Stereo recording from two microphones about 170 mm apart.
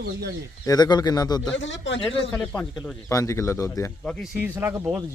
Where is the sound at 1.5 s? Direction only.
90° left.